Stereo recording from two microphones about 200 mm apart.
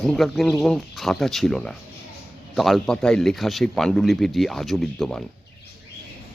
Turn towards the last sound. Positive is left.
turn(degrees=0)  # may be behind; listen again after turning